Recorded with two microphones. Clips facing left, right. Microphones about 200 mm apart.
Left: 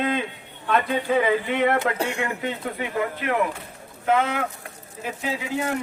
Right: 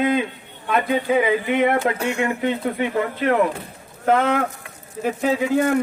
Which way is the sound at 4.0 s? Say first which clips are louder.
Right 4 dB; 50° right (ahead or behind).